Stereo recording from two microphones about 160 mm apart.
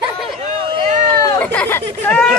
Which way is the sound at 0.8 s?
50° right (ahead or behind).